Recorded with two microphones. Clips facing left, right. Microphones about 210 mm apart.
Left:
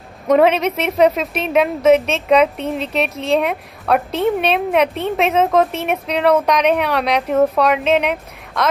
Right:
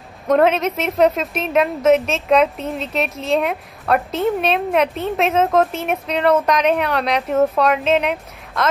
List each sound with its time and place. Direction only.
0.3 s a woman's voice: centre (ahead or behind)